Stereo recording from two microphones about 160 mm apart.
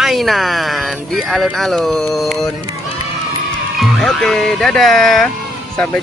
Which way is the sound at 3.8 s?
Centre (ahead or behind).